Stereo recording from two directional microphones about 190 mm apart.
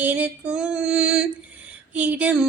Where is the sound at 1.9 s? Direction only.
5° right (ahead or behind).